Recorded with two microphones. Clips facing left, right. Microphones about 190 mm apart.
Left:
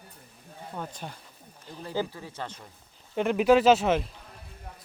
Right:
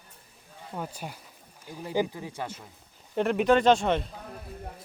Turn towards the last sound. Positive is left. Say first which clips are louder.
# left 1 dB
turn(degrees=5)  # may be behind; listen again after turning